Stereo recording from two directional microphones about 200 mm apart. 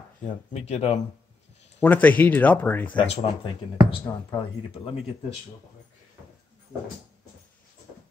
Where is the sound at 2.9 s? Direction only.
25° left (ahead or behind).